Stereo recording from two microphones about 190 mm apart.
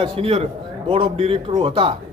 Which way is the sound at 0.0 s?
30° right (ahead or behind).